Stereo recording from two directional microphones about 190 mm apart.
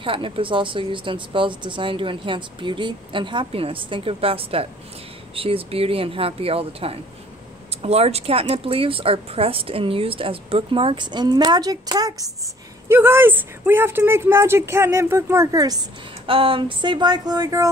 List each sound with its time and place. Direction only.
0.0 s speech: 25° right (ahead or behind)